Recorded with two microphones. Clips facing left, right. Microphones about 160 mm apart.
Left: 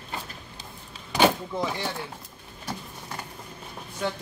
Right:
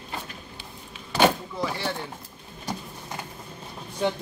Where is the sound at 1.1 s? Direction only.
15° left (ahead or behind).